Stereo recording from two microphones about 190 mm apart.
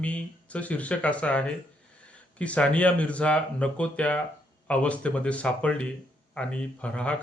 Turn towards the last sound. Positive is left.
turn(degrees=5)  # may be behind; listen again after turning